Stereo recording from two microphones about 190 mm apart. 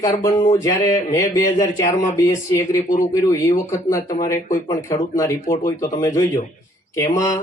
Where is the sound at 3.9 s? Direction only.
15° left (ahead or behind).